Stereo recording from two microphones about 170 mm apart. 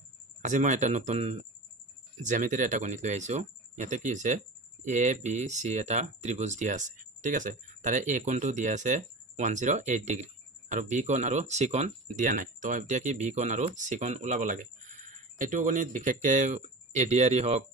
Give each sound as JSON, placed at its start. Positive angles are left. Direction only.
{"t": 0.4, "sound": "speech", "side_deg": -45}